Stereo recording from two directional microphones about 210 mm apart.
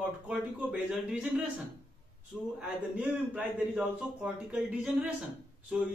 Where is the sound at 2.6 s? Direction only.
5° right (ahead or behind).